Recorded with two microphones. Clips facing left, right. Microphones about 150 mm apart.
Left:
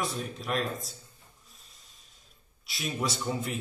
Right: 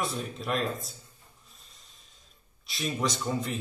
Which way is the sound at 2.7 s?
5° left (ahead or behind).